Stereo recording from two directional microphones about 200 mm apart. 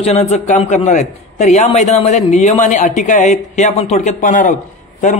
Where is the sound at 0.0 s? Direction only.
35° left (ahead or behind).